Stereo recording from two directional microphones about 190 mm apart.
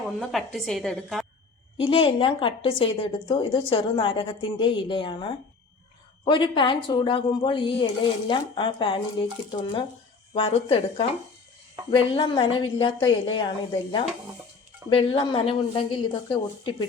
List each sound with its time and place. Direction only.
0.2 s a woman's voice: centre (ahead or behind)
1.8 s a woman's voice: 30° left (ahead or behind)
10.3 s a woman's voice: 30° left (ahead or behind)